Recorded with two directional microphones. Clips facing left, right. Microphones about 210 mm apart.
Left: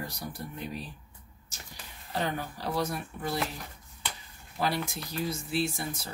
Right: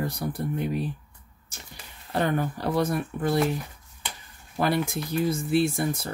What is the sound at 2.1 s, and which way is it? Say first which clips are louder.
Speech: right 7 dB; 55° right (ahead or behind).